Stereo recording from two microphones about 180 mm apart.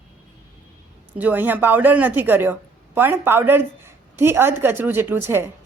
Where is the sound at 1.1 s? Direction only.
10° right (ahead or behind).